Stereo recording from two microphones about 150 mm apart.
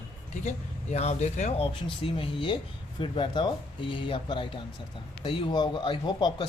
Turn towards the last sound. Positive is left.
turn(degrees=30)  # may be behind; listen again after turning